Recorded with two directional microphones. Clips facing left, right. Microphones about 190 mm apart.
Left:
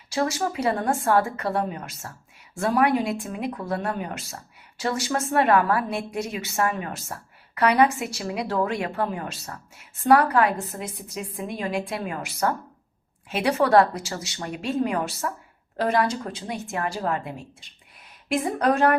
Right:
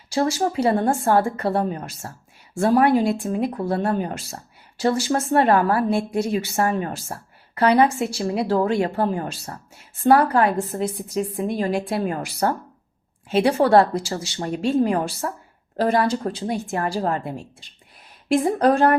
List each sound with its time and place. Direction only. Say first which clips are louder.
0.1 s a woman's voice: right 4 dB; 30° right (ahead or behind)